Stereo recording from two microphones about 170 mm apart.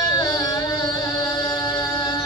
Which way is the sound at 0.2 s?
25° left (ahead or behind).